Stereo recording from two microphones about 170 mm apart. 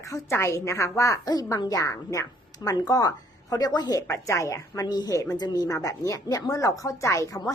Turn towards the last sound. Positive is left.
turn(degrees=20)  # may be behind; listen again after turning